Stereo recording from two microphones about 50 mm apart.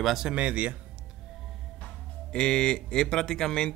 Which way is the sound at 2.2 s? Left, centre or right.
Centre.